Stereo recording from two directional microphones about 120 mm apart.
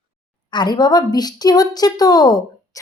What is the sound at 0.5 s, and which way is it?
Speech, 35° left (ahead or behind).